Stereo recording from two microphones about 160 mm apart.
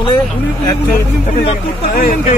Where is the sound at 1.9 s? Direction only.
60° left (ahead or behind).